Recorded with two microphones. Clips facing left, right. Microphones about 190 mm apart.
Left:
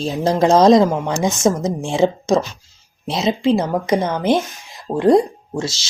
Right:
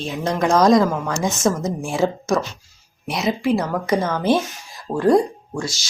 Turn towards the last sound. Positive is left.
turn(degrees=25)  # may be behind; listen again after turning